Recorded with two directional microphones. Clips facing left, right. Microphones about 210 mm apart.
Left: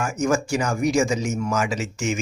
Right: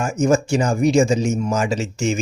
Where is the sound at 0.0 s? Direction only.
25° right (ahead or behind).